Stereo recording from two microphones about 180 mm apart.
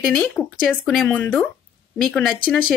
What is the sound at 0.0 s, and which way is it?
A woman's voice, centre (ahead or behind).